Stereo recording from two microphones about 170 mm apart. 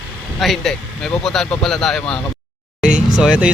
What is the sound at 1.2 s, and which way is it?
Speech, 5° left (ahead or behind).